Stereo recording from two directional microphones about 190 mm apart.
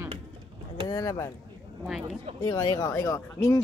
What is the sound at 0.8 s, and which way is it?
Speech, 20° left (ahead or behind).